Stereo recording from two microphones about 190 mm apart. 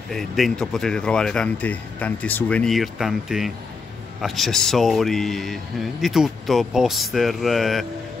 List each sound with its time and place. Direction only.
0.1 s speech: centre (ahead or behind)